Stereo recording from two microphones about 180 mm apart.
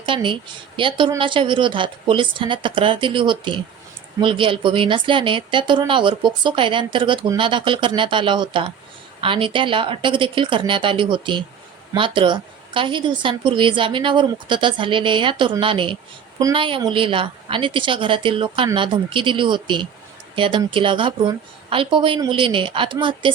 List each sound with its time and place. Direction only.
0.0 s a woman's voice: 30° right (ahead or behind)